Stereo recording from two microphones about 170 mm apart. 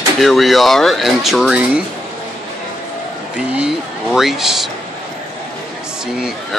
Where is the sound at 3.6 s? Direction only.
5° right (ahead or behind).